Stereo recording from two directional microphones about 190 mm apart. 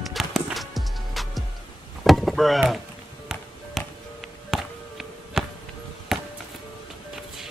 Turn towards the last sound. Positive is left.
turn(degrees=0)  # may be behind; listen again after turning